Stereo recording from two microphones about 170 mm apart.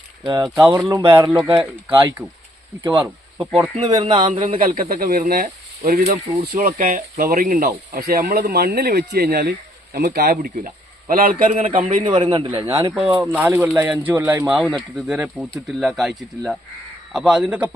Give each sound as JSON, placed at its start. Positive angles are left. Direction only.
{"t": 0.5, "sound": "speech", "side_deg": -15}
{"t": 1.5, "sound": "speech", "side_deg": -30}
{"t": 4.4, "sound": "speech", "side_deg": -50}
{"t": 6.6, "sound": "speech", "side_deg": -50}
{"t": 11.5, "sound": "speech", "side_deg": -35}
{"t": 11.8, "sound": "a man's voice", "side_deg": -50}
{"t": 12.0, "sound": "speech", "side_deg": -30}
{"t": 12.9, "sound": "speech", "side_deg": -5}